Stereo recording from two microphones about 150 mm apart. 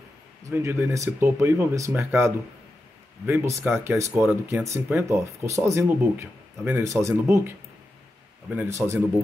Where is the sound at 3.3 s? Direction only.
20° right (ahead or behind).